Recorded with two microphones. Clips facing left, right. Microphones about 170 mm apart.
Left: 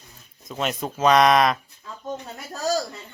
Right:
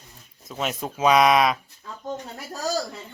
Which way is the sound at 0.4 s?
5° right (ahead or behind).